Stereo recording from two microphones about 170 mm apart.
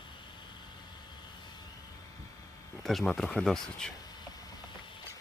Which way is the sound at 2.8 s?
Centre (ahead or behind).